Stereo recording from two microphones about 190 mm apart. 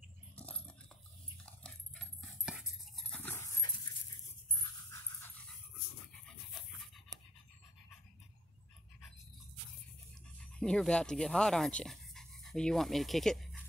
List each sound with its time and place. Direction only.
0.4 s dog: 5° left (ahead or behind)
3.1 s dog: 10° left (ahead or behind)
7.1 s pant: 20° right (ahead or behind)
10.4 s speech: 5° left (ahead or behind)